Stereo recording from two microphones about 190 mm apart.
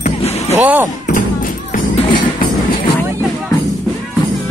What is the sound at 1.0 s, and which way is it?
Music, 45° left (ahead or behind).